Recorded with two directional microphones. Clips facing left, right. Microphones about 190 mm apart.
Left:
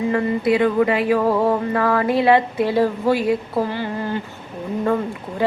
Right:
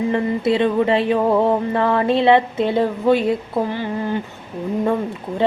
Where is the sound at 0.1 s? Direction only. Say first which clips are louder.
Even; 25° right (ahead or behind).